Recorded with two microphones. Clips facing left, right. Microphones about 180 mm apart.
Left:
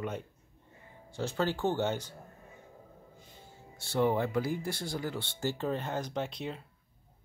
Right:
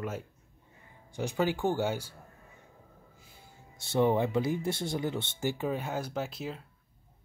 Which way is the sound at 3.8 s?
20° right (ahead or behind).